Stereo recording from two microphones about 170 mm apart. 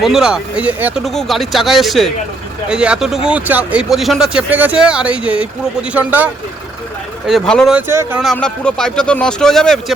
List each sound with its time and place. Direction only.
0.0 s speech: 5° right (ahead or behind)
7.3 s speech: centre (ahead or behind)
7.8 s speech: 10° right (ahead or behind)
8.2 s speech: 5° left (ahead or behind)